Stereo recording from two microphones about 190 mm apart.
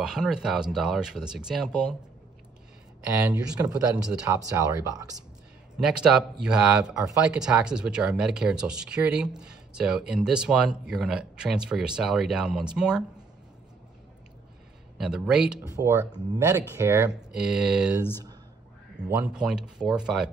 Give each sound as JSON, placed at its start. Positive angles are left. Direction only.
{"t": 0.0, "sound": "speech", "side_deg": -5}
{"t": 3.1, "sound": "speech", "side_deg": -15}
{"t": 5.8, "sound": "speech", "side_deg": -5}
{"t": 15.0, "sound": "speech", "side_deg": -5}
{"t": 15.6, "sound": "speech", "side_deg": -15}
{"t": 19.0, "sound": "speech", "side_deg": -5}